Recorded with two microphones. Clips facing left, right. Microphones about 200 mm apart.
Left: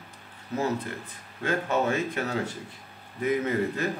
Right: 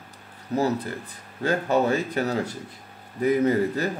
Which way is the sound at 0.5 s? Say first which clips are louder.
Right 4 dB; 35° right (ahead or behind).